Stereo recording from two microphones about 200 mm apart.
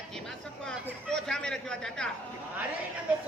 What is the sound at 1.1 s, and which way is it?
A man's voice, 5° left (ahead or behind).